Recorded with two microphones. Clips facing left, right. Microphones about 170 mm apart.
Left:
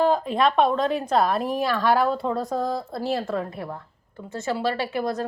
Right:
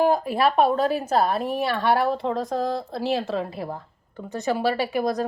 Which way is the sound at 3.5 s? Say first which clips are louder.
Right 2 dB; 30° right (ahead or behind).